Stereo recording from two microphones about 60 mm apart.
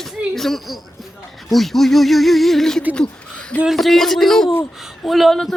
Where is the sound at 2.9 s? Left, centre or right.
Centre.